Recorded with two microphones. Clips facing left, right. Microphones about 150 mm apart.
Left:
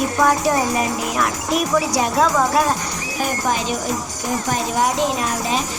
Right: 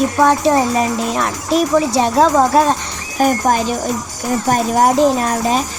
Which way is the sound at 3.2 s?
45° right (ahead or behind).